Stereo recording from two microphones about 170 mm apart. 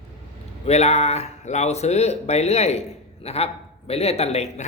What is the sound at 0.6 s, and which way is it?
Speech, 40° left (ahead or behind).